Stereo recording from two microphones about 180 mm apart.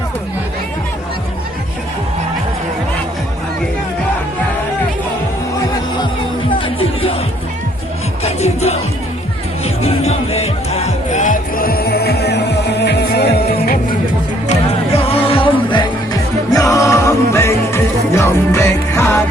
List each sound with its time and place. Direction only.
6.6 s music: 30° left (ahead or behind)
8.2 s music: 35° left (ahead or behind); by 13.7 s 60° left (ahead or behind)
14.4 s music: 40° left (ahead or behind); by 19.2 s 15° left (ahead or behind)